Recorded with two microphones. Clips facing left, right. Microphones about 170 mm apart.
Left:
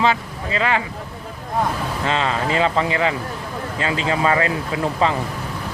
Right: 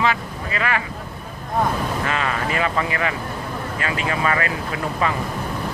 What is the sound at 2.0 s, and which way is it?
Speech, 25° left (ahead or behind).